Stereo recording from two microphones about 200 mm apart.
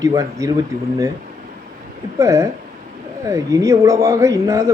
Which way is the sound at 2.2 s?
15° right (ahead or behind).